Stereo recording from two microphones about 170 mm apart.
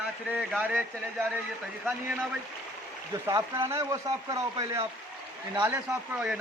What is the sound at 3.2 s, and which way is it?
Speech, 15° right (ahead or behind).